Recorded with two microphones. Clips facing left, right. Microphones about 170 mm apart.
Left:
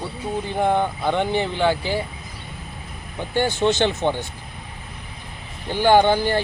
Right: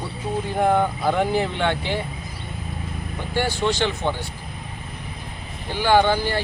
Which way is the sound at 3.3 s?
20° left (ahead or behind).